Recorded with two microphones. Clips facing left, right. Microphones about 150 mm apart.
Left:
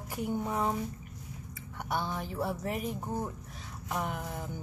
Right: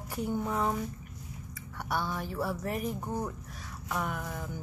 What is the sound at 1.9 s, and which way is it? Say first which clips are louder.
Speech: right 1 dB; 20° left (ahead or behind).